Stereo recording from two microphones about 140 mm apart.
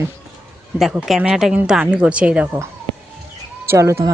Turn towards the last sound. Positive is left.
turn(degrees=-20)  # may be behind; listen again after turning